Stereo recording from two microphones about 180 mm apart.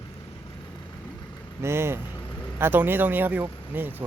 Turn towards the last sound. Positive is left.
turn(degrees=-10)  # may be behind; listen again after turning